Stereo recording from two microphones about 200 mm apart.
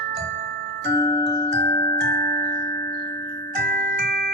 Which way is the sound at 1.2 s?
55° right (ahead or behind).